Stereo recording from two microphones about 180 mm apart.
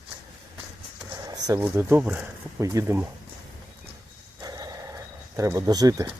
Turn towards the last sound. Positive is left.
turn(degrees=-20)  # may be behind; listen again after turning